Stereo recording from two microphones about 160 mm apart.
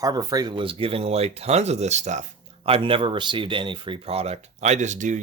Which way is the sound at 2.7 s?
35° right (ahead or behind).